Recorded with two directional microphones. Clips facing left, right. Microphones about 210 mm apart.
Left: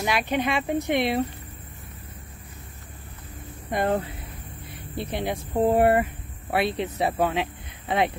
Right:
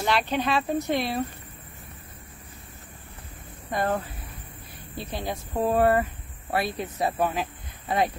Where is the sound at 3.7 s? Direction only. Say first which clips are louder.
Left 2 dB; 20° left (ahead or behind).